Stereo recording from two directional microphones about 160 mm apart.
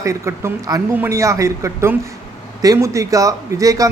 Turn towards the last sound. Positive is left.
turn(degrees=-20)  # may be behind; listen again after turning